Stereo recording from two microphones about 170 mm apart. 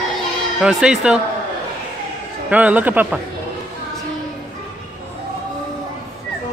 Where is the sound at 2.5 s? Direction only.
10° right (ahead or behind).